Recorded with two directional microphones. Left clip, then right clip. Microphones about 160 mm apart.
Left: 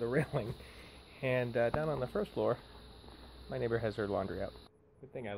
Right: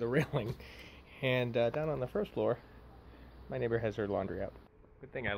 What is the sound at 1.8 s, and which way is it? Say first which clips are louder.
Speech: even; 5° right (ahead or behind).